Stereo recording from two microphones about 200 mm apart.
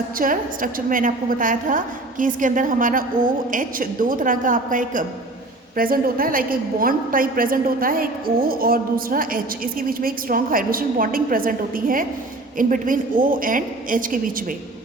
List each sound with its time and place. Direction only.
0.2 s a woman's voice: 45° right (ahead or behind)